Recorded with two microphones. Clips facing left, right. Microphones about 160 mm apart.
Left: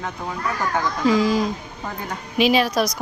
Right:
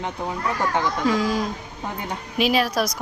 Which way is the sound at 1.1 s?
Centre (ahead or behind).